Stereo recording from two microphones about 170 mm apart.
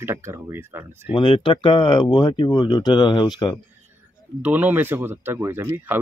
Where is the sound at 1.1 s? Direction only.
30° left (ahead or behind).